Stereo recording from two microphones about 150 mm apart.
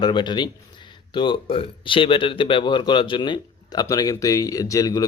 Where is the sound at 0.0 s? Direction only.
30° left (ahead or behind).